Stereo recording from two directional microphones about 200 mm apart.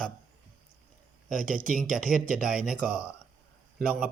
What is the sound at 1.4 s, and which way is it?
Speech, 45° right (ahead or behind).